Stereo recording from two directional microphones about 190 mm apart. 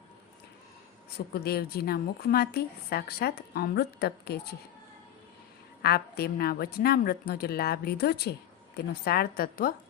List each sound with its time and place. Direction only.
1.3 s a woman's voice: 55° left (ahead or behind)
5.8 s a woman's voice: 55° left (ahead or behind)